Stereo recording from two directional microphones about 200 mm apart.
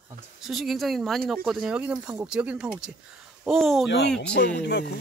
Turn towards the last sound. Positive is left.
turn(degrees=55)  # may be behind; listen again after turning